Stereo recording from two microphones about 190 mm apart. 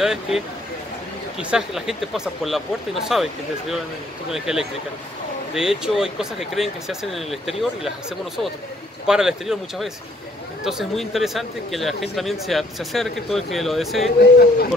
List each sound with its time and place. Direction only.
0.0 s speech: centre (ahead or behind)
1.4 s speech: 5° right (ahead or behind)
9.0 s speech: 5° right (ahead or behind)
14.2 s speech: 60° left (ahead or behind)